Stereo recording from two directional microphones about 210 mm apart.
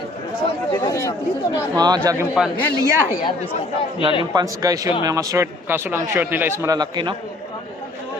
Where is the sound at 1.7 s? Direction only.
20° right (ahead or behind).